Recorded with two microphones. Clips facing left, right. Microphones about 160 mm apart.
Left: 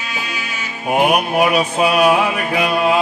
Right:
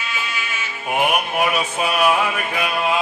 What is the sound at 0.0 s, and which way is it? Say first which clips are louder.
Music: left 1 dB; 40° left (ahead or behind).